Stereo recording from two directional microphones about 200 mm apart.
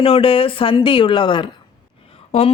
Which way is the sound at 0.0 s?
30° left (ahead or behind).